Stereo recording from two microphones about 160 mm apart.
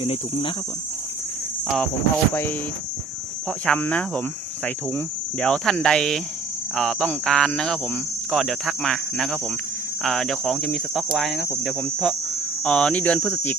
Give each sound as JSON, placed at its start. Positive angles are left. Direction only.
{"t": 0.0, "sound": "speech", "side_deg": 35}
{"t": 1.6, "sound": "cricket", "side_deg": 0}
{"t": 2.3, "sound": "speech", "side_deg": 15}
{"t": 3.7, "sound": "speech", "side_deg": 10}
{"t": 4.6, "sound": "cricket", "side_deg": 10}
{"t": 12.6, "sound": "speech", "side_deg": 5}